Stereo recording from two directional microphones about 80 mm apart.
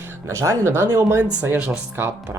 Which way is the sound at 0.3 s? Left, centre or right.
Right.